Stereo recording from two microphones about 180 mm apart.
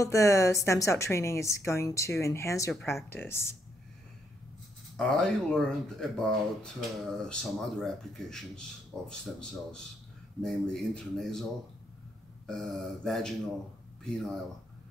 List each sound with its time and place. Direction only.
0.0 s a woman's voice: 15° left (ahead or behind)
4.9 s speech: 5° left (ahead or behind)
12.4 s speech: 5° left (ahead or behind)